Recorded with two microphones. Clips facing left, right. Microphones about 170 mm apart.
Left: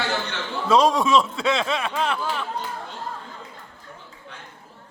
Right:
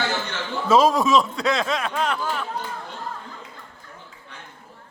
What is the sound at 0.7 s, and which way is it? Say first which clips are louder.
Speech: right 1 dB; 5° right (ahead or behind).